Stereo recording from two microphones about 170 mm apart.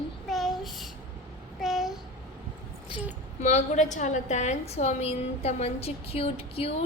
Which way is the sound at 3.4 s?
40° left (ahead or behind).